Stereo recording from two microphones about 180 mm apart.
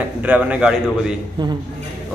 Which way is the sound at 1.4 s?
25° right (ahead or behind).